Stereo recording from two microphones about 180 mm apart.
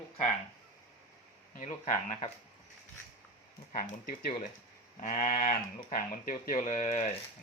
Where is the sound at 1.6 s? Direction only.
45° left (ahead or behind).